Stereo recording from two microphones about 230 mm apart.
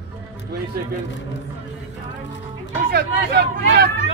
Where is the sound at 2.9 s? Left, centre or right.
Right.